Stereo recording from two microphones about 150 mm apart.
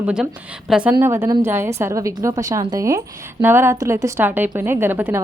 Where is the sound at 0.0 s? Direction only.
5° right (ahead or behind).